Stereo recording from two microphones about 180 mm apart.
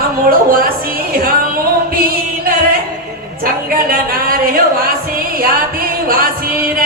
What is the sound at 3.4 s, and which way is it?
Music, 50° right (ahead or behind).